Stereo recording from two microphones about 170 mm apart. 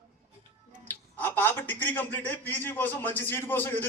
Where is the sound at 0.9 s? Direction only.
10° left (ahead or behind).